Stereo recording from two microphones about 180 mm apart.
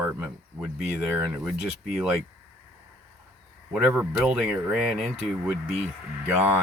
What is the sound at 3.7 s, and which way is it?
Speech, 5° right (ahead or behind).